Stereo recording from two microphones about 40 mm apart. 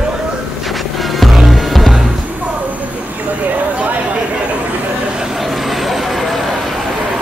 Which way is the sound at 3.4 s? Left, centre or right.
Right.